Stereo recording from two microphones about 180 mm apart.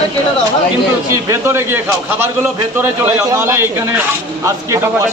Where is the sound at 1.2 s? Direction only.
15° right (ahead or behind).